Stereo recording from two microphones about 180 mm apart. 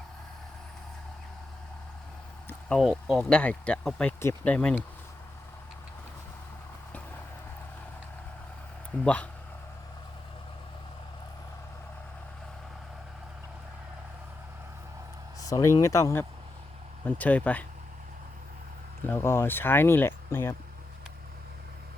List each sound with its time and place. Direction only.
2.5 s a sound: 5° left (ahead or behind)
3.2 s speech: 5° left (ahead or behind)
15.4 s speech: 20° left (ahead or behind)
19.0 s speech: 15° left (ahead or behind)